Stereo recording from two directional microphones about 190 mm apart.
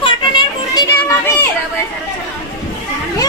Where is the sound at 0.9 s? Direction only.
15° left (ahead or behind).